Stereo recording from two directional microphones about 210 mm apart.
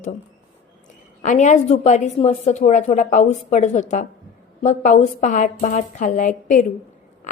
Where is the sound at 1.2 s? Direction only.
35° left (ahead or behind).